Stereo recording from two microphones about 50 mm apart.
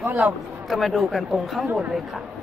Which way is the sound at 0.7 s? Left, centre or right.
Centre.